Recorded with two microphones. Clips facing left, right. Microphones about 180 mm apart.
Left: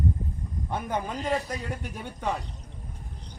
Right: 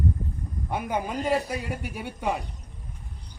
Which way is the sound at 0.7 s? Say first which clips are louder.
Right 2 dB; 10° right (ahead or behind).